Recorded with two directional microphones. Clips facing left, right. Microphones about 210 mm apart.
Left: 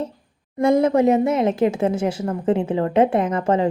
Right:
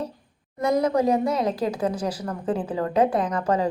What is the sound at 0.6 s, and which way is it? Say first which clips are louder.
Speech: left 5 dB; 25° left (ahead or behind).